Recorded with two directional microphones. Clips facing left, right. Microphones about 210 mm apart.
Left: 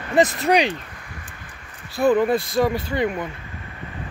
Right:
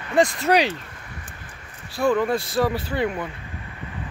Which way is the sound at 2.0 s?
20° left (ahead or behind).